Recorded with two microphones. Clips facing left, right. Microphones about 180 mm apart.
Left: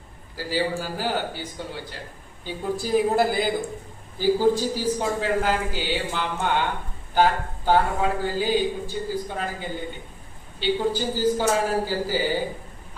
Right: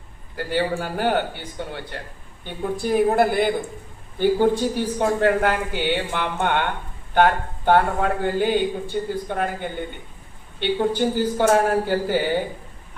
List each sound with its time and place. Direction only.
0.3 s speech: 60° right (ahead or behind)